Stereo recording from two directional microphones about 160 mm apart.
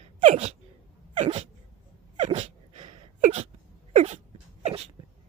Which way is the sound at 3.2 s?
45° right (ahead or behind).